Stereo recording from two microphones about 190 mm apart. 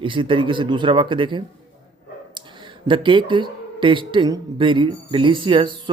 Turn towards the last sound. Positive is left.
turn(degrees=-25)  # may be behind; listen again after turning